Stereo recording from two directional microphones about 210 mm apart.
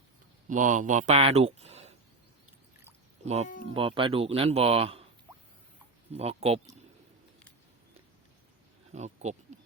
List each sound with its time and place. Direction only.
0.4 s speech: 35° right (ahead or behind)
3.8 s speech: 25° right (ahead or behind)
6.1 s speech: 30° right (ahead or behind)
8.9 s speech: 35° right (ahead or behind)